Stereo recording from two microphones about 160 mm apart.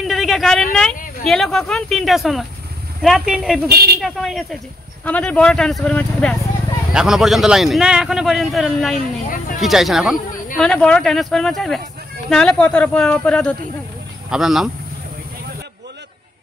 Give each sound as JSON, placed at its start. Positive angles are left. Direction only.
{"t": 0.0, "sound": "a sound", "side_deg": 0}
{"t": 0.7, "sound": "a man's voice", "side_deg": 0}
{"t": 3.7, "sound": "speech", "side_deg": -75}
{"t": 4.0, "sound": "a man's voice", "side_deg": 0}